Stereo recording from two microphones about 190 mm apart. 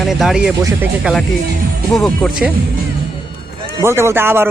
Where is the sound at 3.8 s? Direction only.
15° right (ahead or behind).